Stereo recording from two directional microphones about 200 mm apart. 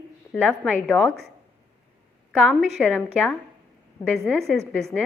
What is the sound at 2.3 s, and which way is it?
Speech, 5° right (ahead or behind).